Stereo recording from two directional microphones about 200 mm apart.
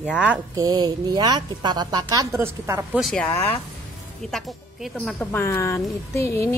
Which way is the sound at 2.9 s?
Centre (ahead or behind).